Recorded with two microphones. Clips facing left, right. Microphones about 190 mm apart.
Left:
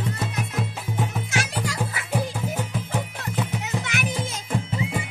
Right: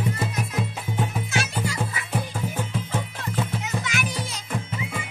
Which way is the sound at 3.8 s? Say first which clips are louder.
Left 1 dB; 60° left (ahead or behind).